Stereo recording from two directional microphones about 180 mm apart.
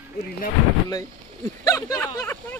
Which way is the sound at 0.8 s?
20° left (ahead or behind).